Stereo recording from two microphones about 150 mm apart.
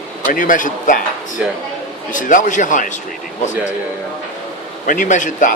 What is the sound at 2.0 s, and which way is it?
Speech, 60° left (ahead or behind).